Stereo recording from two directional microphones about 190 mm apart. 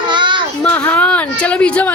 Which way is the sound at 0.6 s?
5° left (ahead or behind).